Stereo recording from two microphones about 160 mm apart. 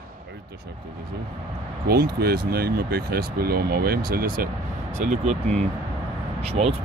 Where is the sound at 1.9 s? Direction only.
70° right (ahead or behind).